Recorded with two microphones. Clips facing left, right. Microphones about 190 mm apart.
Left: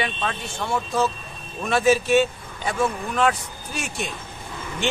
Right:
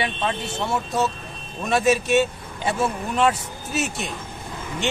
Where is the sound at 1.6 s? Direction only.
Centre (ahead or behind).